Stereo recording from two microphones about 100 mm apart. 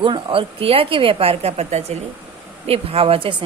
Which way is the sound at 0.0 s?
55° right (ahead or behind).